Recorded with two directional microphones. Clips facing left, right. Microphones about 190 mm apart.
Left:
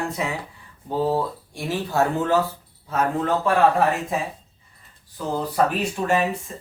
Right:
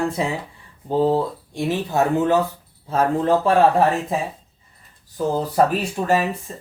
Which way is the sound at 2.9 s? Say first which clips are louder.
Right 4 dB; 30° right (ahead or behind).